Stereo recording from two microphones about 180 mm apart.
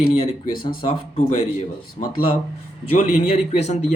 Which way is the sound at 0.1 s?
30° left (ahead or behind).